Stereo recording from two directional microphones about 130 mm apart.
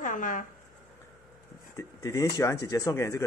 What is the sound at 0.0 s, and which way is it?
Speech, 85° left.